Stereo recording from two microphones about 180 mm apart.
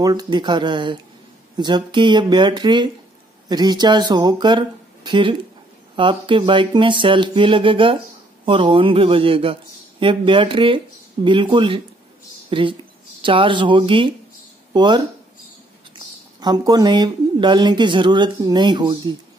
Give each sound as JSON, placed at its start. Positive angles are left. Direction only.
{"t": 0.0, "sound": "speech", "side_deg": -20}
{"t": 16.3, "sound": "speech", "side_deg": -20}